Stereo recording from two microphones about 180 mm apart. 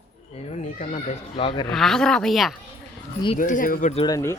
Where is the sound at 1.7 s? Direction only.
Centre (ahead or behind).